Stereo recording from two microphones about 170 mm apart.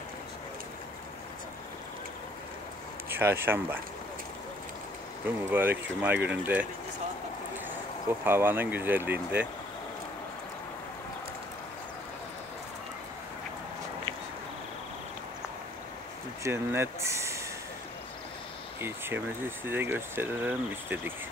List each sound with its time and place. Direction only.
3.1 s speech: 15° right (ahead or behind)
5.5 s speech: 10° right (ahead or behind)
8.2 s speech: 10° right (ahead or behind)
16.4 s speech: 15° right (ahead or behind)
18.8 s speech: 15° right (ahead or behind)